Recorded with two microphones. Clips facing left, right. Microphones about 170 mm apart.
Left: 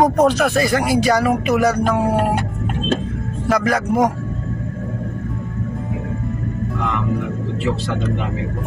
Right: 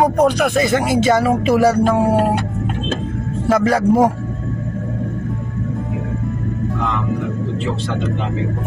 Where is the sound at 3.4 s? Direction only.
25° right (ahead or behind).